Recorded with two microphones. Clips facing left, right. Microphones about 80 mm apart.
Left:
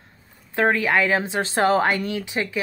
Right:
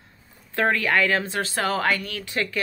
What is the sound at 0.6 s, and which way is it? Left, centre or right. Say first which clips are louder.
Speech: left 2 dB; left.